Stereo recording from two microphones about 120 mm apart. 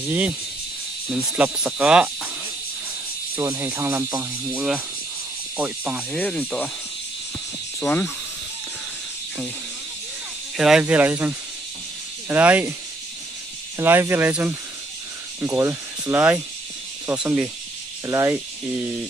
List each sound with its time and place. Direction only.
1.0 s speech: 10° right (ahead or behind)
3.3 s speech: 15° right (ahead or behind)
6.1 s speech: 10° left (ahead or behind)
7.8 s speech: 5° left (ahead or behind)
10.6 s speech: 5° right (ahead or behind)
13.7 s speech: 20° right (ahead or behind)